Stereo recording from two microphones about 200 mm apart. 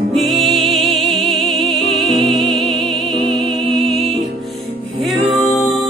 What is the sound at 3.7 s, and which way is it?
Music, centre (ahead or behind).